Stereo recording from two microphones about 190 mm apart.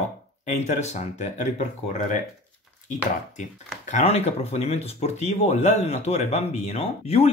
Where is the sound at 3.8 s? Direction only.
35° left (ahead or behind).